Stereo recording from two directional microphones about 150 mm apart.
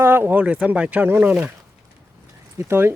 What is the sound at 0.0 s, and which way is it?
Speech, 15° right (ahead or behind).